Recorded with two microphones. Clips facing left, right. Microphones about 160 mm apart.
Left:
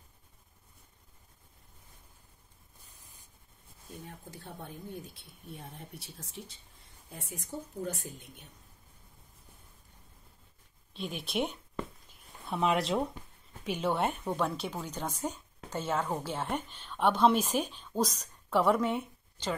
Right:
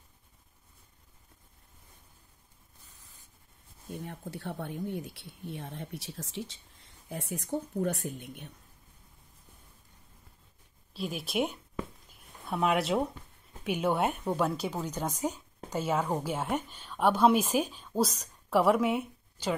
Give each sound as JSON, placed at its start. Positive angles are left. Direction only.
{"t": 4.0, "sound": "speech", "side_deg": -70}
{"t": 10.9, "sound": "a woman's voice", "side_deg": -5}